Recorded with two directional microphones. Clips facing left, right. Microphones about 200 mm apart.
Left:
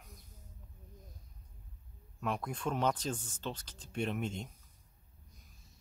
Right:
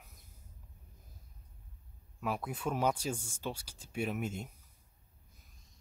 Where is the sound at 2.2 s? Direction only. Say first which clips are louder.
Even; 5° right (ahead or behind).